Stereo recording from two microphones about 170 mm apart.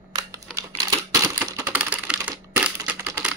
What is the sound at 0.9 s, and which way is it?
Typewriter, 20° right (ahead or behind).